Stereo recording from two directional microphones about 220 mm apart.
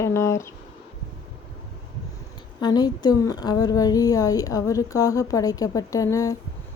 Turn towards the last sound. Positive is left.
turn(degrees=15)  # may be behind; listen again after turning